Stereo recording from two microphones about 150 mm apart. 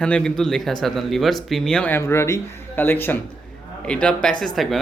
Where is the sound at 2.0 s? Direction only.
20° left (ahead or behind).